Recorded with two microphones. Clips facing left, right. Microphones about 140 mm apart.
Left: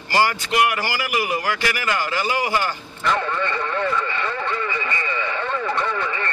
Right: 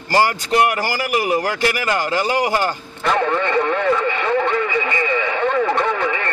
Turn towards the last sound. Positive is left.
turn(degrees=-75)  # may be behind; listen again after turning